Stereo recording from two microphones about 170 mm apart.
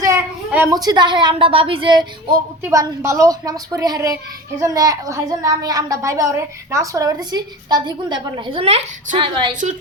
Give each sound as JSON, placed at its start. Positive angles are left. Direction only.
{"t": 0.0, "sound": "a woman's voice", "side_deg": -15}
{"t": 2.6, "sound": "a woman's voice", "side_deg": -15}